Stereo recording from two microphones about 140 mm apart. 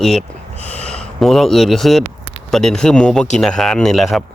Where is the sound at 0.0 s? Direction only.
Centre (ahead or behind).